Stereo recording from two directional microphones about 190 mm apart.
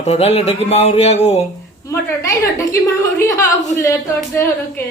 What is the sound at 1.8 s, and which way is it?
Music, 15° left (ahead or behind).